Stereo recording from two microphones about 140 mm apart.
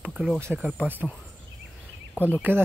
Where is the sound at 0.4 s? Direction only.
15° right (ahead or behind).